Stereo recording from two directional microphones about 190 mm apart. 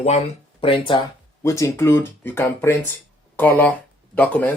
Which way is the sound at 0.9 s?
20° left (ahead or behind).